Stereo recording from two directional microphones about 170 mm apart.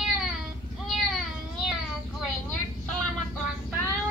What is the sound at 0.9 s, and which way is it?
Cat, centre (ahead or behind).